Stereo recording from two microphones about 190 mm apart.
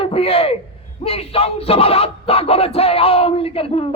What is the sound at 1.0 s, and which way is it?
Music, 30° left (ahead or behind).